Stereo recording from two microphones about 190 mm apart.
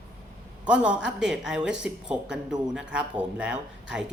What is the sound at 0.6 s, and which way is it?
Speech, 5° right (ahead or behind).